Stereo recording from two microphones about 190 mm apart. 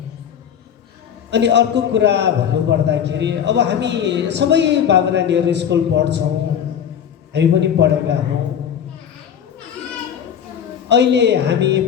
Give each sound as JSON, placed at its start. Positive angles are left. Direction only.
{"t": 1.3, "sound": "a man's voice", "side_deg": -65}
{"t": 7.3, "sound": "a woman's voice", "side_deg": -65}
{"t": 10.8, "sound": "a woman's voice", "side_deg": -65}